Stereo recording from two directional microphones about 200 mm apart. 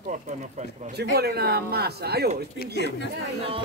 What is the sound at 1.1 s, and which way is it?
Speech, 55° right (ahead or behind).